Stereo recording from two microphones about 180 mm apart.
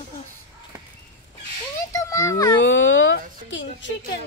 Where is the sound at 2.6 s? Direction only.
90° left.